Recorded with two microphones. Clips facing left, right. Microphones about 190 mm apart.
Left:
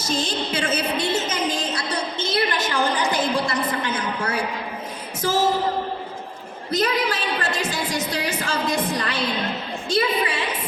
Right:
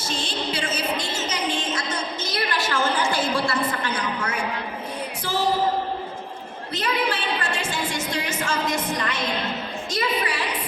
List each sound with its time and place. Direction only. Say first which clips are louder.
0.3 s a woman's voice: left 3 dB; 50° left (ahead or behind)
1.5 s a sound: left 1 dB; 35° left (ahead or behind); by 4.0 s 20° left (ahead or behind)
5.2 s a woman's voice: left 6 dB; 45° left (ahead or behind)
6.7 s a woman's voice: left 3 dB; 40° left (ahead or behind)